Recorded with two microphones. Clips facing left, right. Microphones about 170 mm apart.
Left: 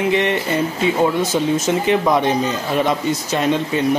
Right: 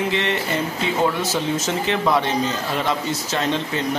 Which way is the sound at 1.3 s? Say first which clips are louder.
Left 5 dB; 15° left (ahead or behind).